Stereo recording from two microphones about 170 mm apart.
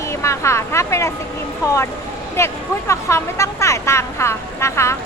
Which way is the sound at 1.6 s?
15° left (ahead or behind).